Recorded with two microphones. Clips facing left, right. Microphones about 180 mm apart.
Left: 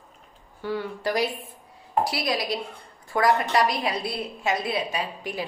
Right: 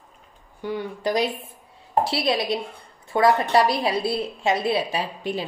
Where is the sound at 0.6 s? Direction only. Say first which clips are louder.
Right 1 dB; 15° right (ahead or behind).